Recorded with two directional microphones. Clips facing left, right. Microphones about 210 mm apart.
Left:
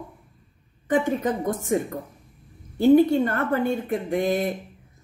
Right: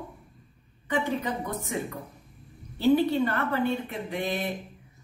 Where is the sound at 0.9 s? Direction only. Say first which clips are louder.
Left 6 dB; 45° left (ahead or behind).